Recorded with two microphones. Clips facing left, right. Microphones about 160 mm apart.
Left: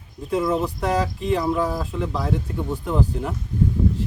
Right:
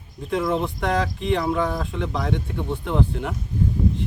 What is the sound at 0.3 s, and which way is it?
Speech, centre (ahead or behind).